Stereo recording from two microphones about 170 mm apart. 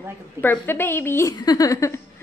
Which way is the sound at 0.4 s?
10° left (ahead or behind).